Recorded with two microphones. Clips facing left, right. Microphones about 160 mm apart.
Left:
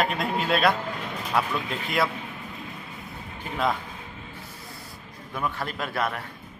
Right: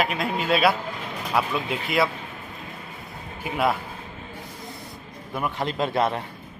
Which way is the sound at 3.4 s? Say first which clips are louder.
Right 3 dB; 10° right (ahead or behind).